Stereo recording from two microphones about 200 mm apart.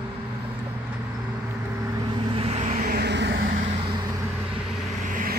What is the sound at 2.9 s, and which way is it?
Vehicle, 60° right (ahead or behind).